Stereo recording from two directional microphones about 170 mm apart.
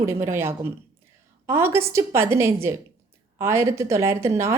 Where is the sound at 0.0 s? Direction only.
15° right (ahead or behind).